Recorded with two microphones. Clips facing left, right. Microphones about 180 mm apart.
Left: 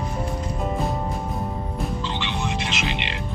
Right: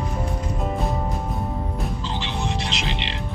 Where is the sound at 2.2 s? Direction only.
35° right (ahead or behind).